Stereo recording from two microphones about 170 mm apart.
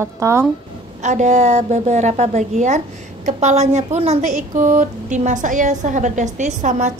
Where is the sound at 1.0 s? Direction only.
45° right (ahead or behind).